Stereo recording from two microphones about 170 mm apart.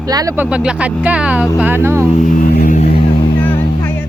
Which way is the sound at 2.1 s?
50° left (ahead or behind).